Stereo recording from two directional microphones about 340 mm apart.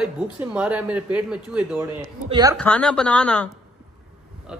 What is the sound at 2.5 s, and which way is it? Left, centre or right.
Speech, centre.